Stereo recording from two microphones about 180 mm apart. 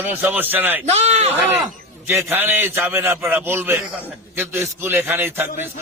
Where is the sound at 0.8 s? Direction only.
35° right (ahead or behind).